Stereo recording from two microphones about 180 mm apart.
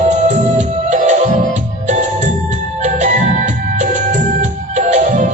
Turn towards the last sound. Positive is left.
turn(degrees=-45)  # may be behind; listen again after turning